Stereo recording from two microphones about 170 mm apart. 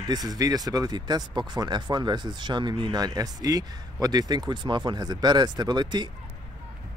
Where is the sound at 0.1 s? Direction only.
20° right (ahead or behind).